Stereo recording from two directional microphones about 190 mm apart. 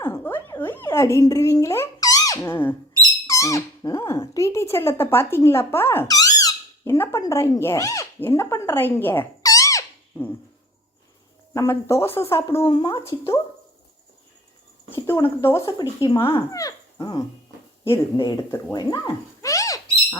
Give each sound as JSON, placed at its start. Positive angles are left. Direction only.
{"t": 0.0, "sound": "a sound", "side_deg": 10}
{"t": 3.2, "sound": "speech", "side_deg": 15}
{"t": 11.5, "sound": "speech", "side_deg": 15}
{"t": 12.6, "sound": "speech", "side_deg": 25}
{"t": 15.4, "sound": "speech", "side_deg": 15}